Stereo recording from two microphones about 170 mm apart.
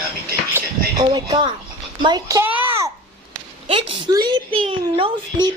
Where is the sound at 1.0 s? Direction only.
25° right (ahead or behind).